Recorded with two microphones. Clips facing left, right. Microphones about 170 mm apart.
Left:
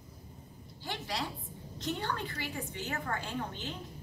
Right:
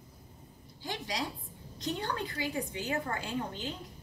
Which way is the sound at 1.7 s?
15° right (ahead or behind).